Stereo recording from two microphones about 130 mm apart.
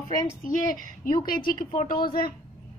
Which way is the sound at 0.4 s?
90° left.